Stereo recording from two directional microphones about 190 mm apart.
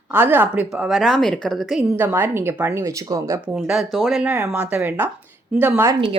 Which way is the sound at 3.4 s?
Centre (ahead or behind).